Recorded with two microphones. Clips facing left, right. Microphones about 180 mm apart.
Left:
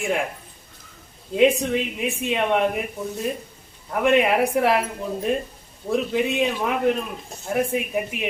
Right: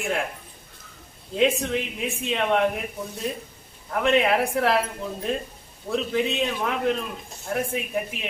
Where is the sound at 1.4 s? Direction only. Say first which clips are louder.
Left 4 dB; 15° left (ahead or behind).